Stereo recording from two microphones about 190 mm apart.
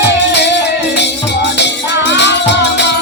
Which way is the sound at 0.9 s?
65° left (ahead or behind).